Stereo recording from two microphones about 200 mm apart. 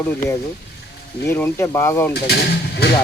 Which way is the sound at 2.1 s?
55° left (ahead or behind).